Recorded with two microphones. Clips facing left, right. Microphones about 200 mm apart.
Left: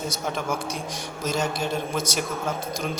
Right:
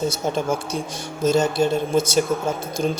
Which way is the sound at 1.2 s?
30° right (ahead or behind).